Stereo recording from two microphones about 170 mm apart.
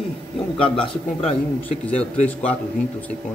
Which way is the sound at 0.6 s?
30° left (ahead or behind).